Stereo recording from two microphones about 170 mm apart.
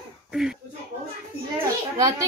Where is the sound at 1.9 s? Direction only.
20° right (ahead or behind).